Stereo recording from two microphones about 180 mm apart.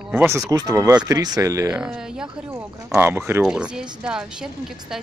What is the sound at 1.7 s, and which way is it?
Speech, 5° right (ahead or behind).